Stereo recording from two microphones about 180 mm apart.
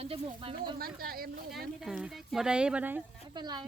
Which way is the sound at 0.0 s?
30° right (ahead or behind).